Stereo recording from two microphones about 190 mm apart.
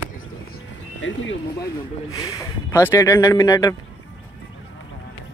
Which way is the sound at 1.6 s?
15° left (ahead or behind).